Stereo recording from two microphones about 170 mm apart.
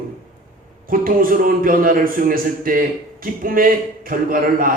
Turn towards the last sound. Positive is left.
turn(degrees=-55)  # may be behind; listen again after turning